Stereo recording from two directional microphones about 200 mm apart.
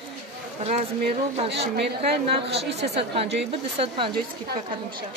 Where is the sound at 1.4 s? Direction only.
60° right (ahead or behind).